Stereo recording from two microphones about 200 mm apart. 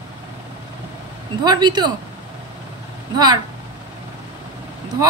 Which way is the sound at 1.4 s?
20° right (ahead or behind).